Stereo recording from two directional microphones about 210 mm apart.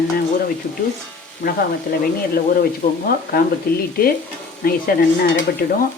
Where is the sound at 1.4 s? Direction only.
40° left (ahead or behind).